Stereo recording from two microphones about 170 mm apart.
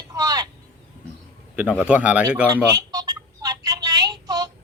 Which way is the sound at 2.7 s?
20° right (ahead or behind).